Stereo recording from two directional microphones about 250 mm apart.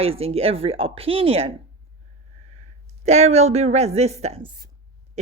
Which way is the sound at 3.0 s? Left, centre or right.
Right.